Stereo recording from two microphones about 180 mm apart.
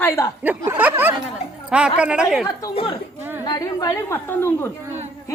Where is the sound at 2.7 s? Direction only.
30° left (ahead or behind); by 4.7 s 15° left (ahead or behind).